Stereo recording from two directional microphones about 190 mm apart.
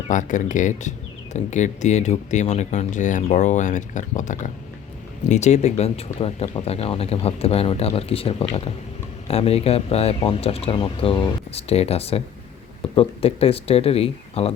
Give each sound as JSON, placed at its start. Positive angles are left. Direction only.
{"t": 0.1, "sound": "speech", "side_deg": 40}